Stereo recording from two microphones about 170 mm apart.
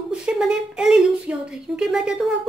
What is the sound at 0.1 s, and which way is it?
A woman's voice, 5° right (ahead or behind).